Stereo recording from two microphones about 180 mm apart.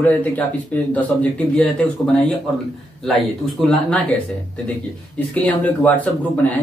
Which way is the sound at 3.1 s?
5° left (ahead or behind).